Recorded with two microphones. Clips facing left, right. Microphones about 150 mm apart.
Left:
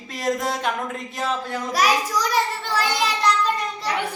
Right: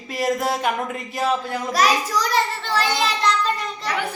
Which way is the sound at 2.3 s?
10° left (ahead or behind).